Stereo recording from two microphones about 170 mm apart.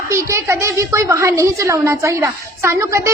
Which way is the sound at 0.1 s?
15° right (ahead or behind).